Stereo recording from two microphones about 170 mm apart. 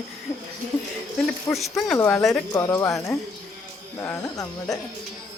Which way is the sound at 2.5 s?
15° left (ahead or behind).